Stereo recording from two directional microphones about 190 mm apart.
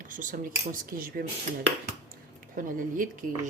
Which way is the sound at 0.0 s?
45° right (ahead or behind).